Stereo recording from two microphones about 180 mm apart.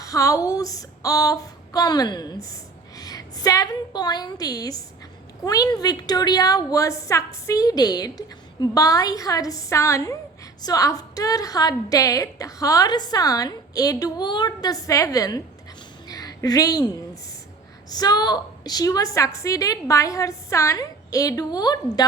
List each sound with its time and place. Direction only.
0.0 s a woman's voice: 15° left (ahead or behind)
16.0 s a sound: 20° left (ahead or behind)
17.8 s a woman's voice: 20° left (ahead or behind)